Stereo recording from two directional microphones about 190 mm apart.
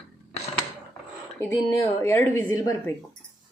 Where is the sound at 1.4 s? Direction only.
10° left (ahead or behind).